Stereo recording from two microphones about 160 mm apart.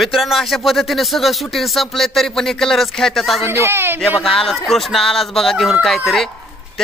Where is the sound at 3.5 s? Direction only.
15° right (ahead or behind).